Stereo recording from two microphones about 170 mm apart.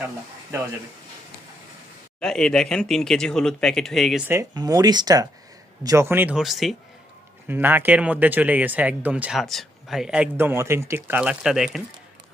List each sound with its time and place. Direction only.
2.2 s speech: 5° left (ahead or behind)
4.3 s speech: 20° right (ahead or behind); by 6.7 s centre (ahead or behind)
7.4 s speech: 10° right (ahead or behind)